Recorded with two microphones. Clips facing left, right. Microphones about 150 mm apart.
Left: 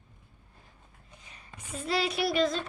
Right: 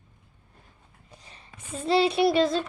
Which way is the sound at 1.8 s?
30° right (ahead or behind).